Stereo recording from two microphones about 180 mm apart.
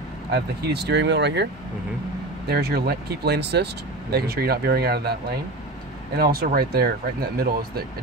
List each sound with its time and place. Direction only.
0.3 s speech: 70° right (ahead or behind)
2.4 s speech: 60° right (ahead or behind)